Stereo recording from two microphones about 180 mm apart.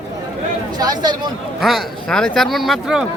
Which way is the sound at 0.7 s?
20° right (ahead or behind).